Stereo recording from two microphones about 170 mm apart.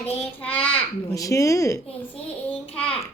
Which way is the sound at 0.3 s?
10° left (ahead or behind).